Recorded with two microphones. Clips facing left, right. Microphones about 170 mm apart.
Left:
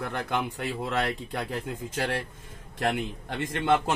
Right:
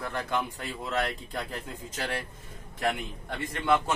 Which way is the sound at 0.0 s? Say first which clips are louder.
Left 1 dB; 60° left (ahead or behind).